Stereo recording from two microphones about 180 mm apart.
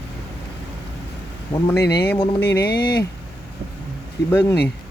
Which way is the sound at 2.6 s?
60° left (ahead or behind).